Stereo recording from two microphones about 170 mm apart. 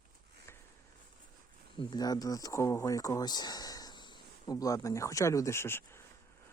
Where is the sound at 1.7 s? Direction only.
25° left (ahead or behind).